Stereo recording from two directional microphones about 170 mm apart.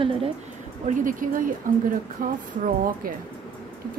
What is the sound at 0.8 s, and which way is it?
A woman's voice, 50° right (ahead or behind).